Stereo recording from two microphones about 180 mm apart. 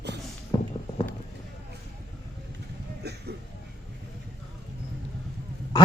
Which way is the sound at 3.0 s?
65° right (ahead or behind).